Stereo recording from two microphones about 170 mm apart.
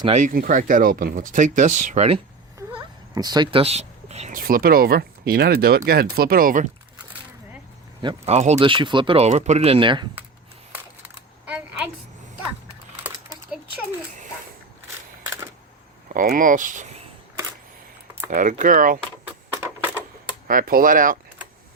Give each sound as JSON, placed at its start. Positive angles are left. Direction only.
{"t": 0.1, "sound": "speech", "side_deg": -50}
{"t": 2.6, "sound": "a sound", "side_deg": -20}
{"t": 4.4, "sound": "speech", "side_deg": -60}
{"t": 8.0, "sound": "speech", "side_deg": -40}
{"t": 8.5, "sound": "speech", "side_deg": -30}
{"t": 11.4, "sound": "a sound", "side_deg": -5}
{"t": 13.0, "sound": "typing", "side_deg": -10}
{"t": 16.1, "sound": "speech", "side_deg": -55}
{"t": 18.3, "sound": "speech", "side_deg": -50}
{"t": 19.6, "sound": "typewriter", "side_deg": -10}
{"t": 20.5, "sound": "speech", "side_deg": -55}